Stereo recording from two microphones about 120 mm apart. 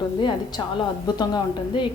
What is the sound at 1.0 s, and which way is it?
Speech, 35° left (ahead or behind).